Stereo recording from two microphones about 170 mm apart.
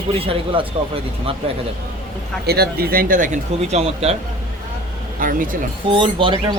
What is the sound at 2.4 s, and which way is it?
Speech, 70° right (ahead or behind).